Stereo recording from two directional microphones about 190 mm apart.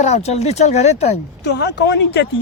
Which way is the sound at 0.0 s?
35° left (ahead or behind).